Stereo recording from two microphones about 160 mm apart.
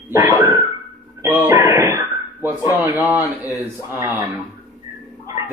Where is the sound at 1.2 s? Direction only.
20° right (ahead or behind).